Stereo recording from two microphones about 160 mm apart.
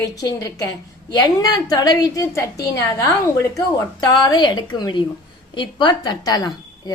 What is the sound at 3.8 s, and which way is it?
A woman's voice, 25° left (ahead or behind).